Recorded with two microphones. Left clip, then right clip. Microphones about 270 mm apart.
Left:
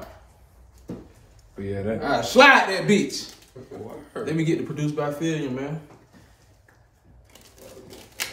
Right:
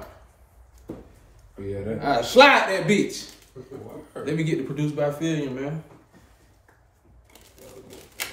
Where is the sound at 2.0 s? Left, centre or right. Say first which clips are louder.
Even; centre.